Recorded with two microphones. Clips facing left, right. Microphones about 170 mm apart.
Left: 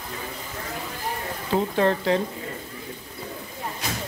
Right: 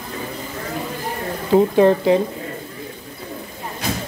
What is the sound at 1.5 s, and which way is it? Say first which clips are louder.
Speech: right 9 dB; 15° right (ahead or behind).